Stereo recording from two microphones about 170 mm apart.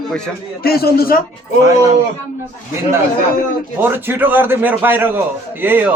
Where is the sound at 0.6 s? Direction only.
65° left (ahead or behind).